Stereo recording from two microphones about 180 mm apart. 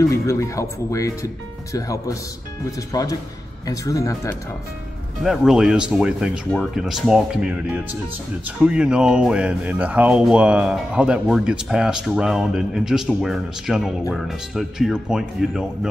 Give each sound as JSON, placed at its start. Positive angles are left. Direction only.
{"t": 0.0, "sound": "speech", "side_deg": 15}
{"t": 5.2, "sound": "speech", "side_deg": 0}